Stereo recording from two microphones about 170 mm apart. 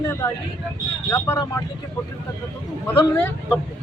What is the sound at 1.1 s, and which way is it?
Speech, 15° left (ahead or behind).